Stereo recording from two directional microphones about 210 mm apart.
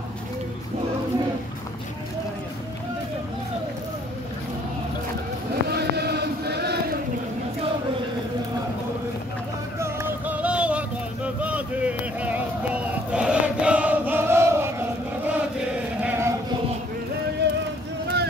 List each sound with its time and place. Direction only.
5.7 s chant: 50° right (ahead or behind)
9.8 s music: 10° right (ahead or behind)
11.4 s a sound: 5° right (ahead or behind)
17.4 s music: 55° right (ahead or behind)